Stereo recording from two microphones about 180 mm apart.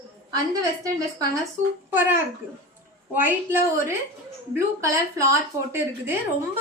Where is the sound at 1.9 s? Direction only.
10° right (ahead or behind).